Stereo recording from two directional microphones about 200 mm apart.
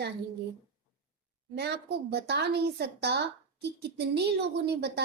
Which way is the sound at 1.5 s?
55° right (ahead or behind).